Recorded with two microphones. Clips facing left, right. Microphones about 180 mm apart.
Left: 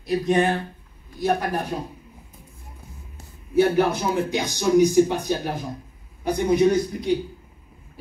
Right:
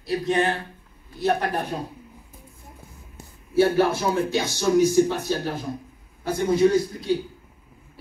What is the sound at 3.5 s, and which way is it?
A man's voice, 15° left (ahead or behind).